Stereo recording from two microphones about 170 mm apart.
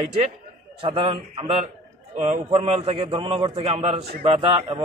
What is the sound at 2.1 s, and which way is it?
A man's voice, 40° right (ahead or behind).